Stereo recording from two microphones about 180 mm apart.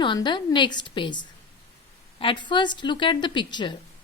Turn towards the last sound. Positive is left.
turn(degrees=25)  # may be behind; listen again after turning